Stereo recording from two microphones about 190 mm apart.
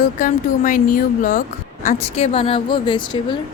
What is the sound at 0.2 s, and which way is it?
Speech, 45° left (ahead or behind).